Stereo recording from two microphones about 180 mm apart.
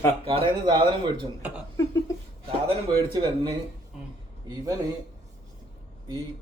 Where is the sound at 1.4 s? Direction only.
10° right (ahead or behind).